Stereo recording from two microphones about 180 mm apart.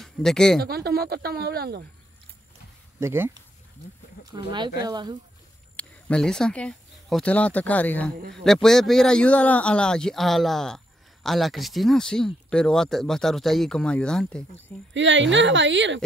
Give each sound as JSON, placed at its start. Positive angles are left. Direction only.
{"t": 0.0, "sound": "speech", "side_deg": 5}
{"t": 0.6, "sound": "speech", "side_deg": -60}
{"t": 3.0, "sound": "speech", "side_deg": -15}
{"t": 4.5, "sound": "speech", "side_deg": -25}
{"t": 5.8, "sound": "speech", "side_deg": 5}
{"t": 8.2, "sound": "speech", "side_deg": -75}
{"t": 8.5, "sound": "speech", "side_deg": 0}
{"t": 15.0, "sound": "a woman's voice", "side_deg": -90}